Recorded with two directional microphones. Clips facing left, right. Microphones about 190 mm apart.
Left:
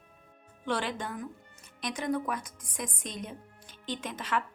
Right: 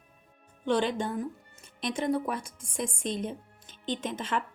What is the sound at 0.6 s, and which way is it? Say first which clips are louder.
A woman's voice: right 5 dB; 25° right (ahead or behind).